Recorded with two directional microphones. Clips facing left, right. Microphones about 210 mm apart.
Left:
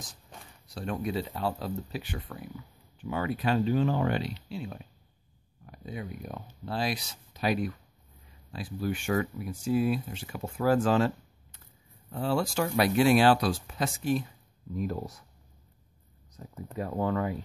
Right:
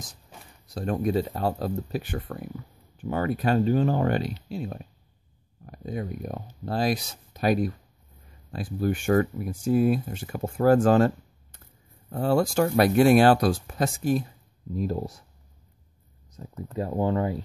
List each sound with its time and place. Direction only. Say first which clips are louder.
0.7 s speech: right 6 dB; 40° right (ahead or behind)
14.7 s speech: right 4 dB; 30° right (ahead or behind)
16.7 s speech: right 4 dB; 30° right (ahead or behind)